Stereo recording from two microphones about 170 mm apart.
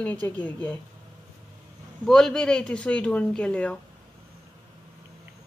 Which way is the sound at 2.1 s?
Centre (ahead or behind).